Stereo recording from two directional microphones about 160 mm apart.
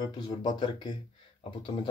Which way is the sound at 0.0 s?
25° left (ahead or behind).